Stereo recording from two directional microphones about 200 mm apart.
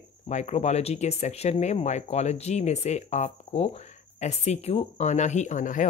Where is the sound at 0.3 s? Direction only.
35° left (ahead or behind).